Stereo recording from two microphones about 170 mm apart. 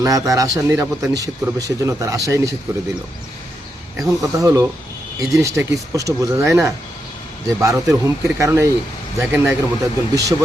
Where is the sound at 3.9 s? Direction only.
20° right (ahead or behind).